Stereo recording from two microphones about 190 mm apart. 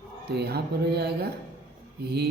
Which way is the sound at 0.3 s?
55° right (ahead or behind).